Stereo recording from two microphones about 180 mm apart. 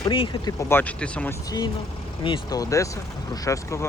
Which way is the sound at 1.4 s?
20° left (ahead or behind).